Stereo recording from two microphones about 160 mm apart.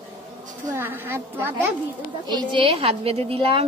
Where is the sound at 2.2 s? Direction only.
30° right (ahead or behind).